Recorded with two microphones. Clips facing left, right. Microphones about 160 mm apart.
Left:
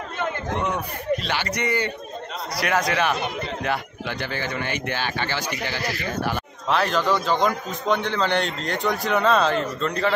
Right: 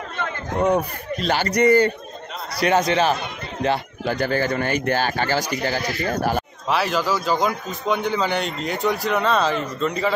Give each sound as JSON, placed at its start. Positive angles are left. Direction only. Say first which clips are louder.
{"t": 0.6, "sound": "speech", "louder": "right 7 dB", "side_deg": -45}
{"t": 2.5, "sound": "speech", "louder": "right 4 dB", "side_deg": -25}
{"t": 6.7, "sound": "a man's voice", "louder": "even", "side_deg": -5}